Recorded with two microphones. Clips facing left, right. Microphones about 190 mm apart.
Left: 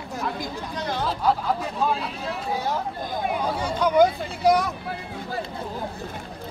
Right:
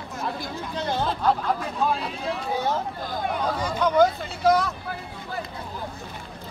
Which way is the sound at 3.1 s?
15° left (ahead or behind).